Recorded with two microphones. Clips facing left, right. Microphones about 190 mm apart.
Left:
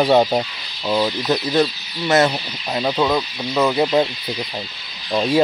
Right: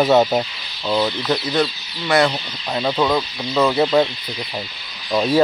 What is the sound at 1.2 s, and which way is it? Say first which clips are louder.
Speech: left 2 dB; 25° left (ahead or behind).